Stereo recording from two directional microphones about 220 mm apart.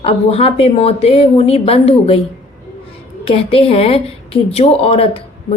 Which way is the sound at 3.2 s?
25° left (ahead or behind).